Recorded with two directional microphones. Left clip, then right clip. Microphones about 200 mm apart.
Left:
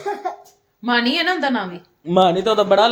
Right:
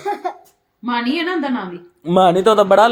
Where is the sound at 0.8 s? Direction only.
55° left (ahead or behind).